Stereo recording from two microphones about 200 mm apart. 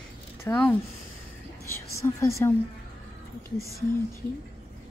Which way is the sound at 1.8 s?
15° left (ahead or behind).